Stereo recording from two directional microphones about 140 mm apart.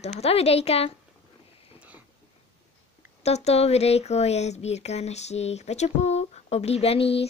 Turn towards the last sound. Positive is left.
turn(degrees=45)  # may be behind; listen again after turning